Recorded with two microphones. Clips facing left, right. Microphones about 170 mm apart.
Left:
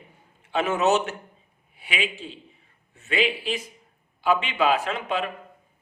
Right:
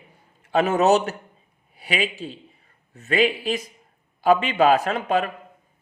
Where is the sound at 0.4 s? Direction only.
40° right (ahead or behind).